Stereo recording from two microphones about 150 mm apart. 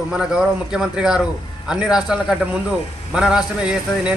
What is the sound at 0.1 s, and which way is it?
A man's voice, 5° right (ahead or behind).